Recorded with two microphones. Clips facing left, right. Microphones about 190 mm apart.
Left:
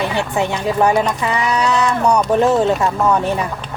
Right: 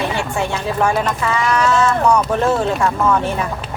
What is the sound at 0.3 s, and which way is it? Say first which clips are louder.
Speech: left 4 dB; 20° left (ahead or behind).